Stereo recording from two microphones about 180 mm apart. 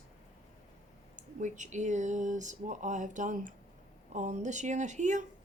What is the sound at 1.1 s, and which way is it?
Speech, 45° right (ahead or behind).